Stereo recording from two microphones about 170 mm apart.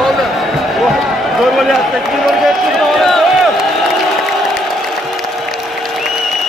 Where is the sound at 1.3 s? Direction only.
Centre (ahead or behind).